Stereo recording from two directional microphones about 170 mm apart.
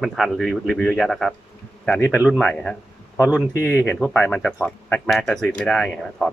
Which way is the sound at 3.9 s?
Centre (ahead or behind).